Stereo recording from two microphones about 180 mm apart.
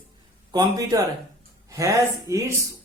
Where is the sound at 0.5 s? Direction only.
20° right (ahead or behind).